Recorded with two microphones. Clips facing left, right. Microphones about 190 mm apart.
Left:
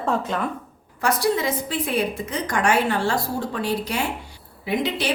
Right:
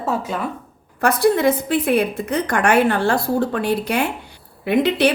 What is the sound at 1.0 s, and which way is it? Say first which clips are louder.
A woman's voice: right 6 dB; 55° right (ahead or behind).